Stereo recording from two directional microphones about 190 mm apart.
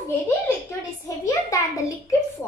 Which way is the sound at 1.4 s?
15° left (ahead or behind).